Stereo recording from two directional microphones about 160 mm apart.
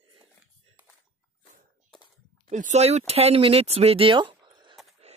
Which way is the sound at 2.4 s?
50° right (ahead or behind).